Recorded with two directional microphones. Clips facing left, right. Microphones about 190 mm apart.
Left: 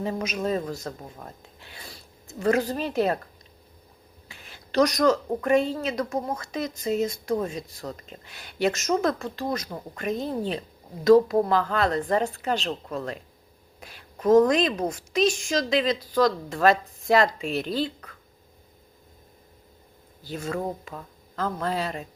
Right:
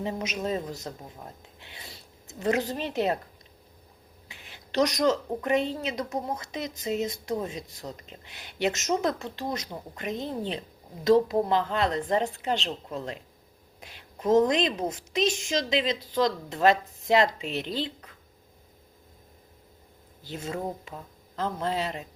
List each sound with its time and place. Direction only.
0.0 s a woman's voice: 20° right (ahead or behind)
4.3 s a woman's voice: 20° right (ahead or behind)
20.2 s a woman's voice: 20° right (ahead or behind)